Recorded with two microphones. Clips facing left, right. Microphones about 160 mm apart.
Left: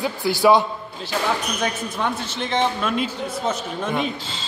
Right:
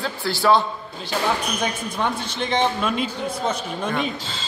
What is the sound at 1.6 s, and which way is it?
A man's voice, centre (ahead or behind).